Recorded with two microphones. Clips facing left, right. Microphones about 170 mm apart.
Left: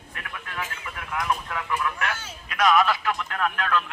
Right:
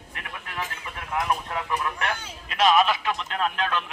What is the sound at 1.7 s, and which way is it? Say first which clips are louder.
Speech: left 1 dB; 30° right (ahead or behind).